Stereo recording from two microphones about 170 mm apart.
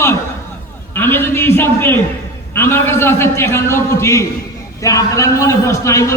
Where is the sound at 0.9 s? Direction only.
10° left (ahead or behind).